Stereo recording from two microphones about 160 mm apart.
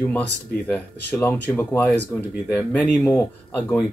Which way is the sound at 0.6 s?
10° left (ahead or behind).